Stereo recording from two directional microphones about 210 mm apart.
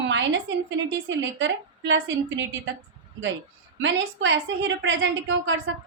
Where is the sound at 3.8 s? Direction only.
60° right (ahead or behind).